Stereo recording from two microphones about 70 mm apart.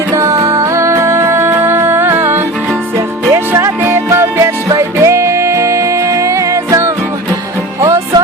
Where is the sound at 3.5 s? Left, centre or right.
Right.